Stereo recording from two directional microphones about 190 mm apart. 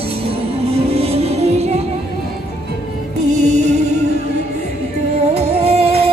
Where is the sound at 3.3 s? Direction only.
35° right (ahead or behind).